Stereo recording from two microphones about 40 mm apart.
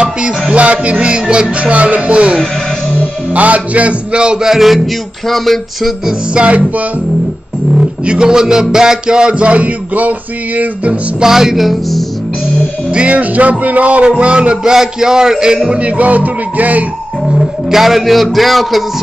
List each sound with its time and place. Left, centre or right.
0.0 s music: right
0.9 s a sound: centre
1.6 s a man's voice: right
3.3 s a man's voice: right
4.5 s music: centre
6.3 s a man's voice: right
8.1 s a sound: centre; by 10.9 s right
11.2 s music: centre
12.9 s a man's voice: right
14.0 s a sound: right
14.6 s a man's voice: centre
15.7 s a man's voice: right
17.4 s a man's voice: centre